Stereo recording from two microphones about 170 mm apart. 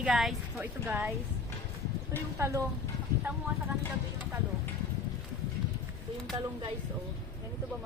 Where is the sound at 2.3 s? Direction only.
15° right (ahead or behind).